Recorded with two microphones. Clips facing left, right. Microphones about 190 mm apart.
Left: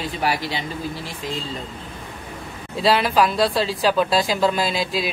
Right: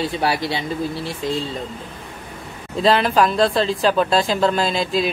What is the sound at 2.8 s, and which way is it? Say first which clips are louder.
Speech: right 2 dB; 5° left (ahead or behind).